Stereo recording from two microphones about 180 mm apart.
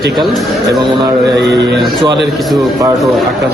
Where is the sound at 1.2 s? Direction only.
70° right (ahead or behind).